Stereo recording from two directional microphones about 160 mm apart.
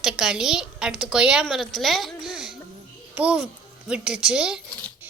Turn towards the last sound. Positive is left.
turn(degrees=-5)  # may be behind; listen again after turning